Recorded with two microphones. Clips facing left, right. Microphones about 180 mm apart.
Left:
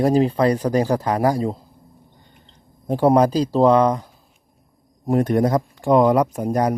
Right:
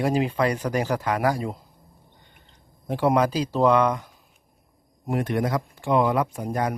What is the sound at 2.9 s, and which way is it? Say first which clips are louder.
Speech: left 6 dB; 40° left (ahead or behind).